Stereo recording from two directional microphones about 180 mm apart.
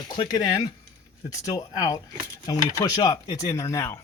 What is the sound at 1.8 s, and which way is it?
Speech, 20° left (ahead or behind).